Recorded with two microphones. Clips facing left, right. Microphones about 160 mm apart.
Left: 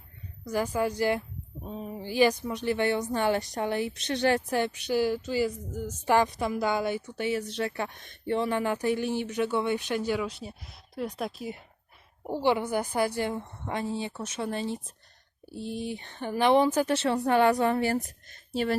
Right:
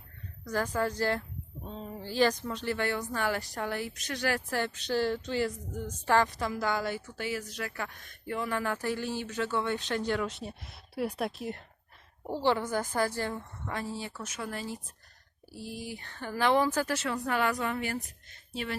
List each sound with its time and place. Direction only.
0.4 s speech: 10° left (ahead or behind)
12.2 s speech: 15° left (ahead or behind); by 18.8 s 40° left (ahead or behind)